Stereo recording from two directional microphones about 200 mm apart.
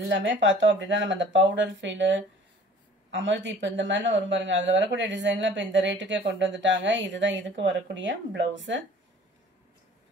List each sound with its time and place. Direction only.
0.1 s speech: 65° right (ahead or behind)